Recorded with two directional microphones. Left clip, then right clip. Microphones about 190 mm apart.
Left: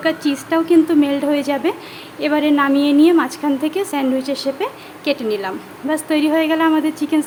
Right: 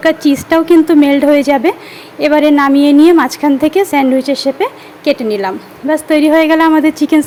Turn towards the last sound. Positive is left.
turn(degrees=-35)  # may be behind; listen again after turning